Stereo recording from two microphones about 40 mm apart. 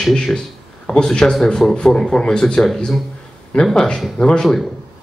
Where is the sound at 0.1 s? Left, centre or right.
Centre.